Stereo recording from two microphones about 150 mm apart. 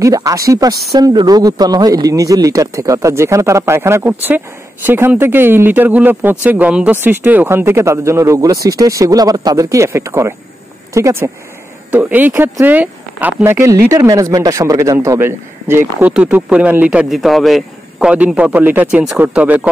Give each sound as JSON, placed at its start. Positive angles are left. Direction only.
{"t": 0.0, "sound": "speech", "side_deg": -20}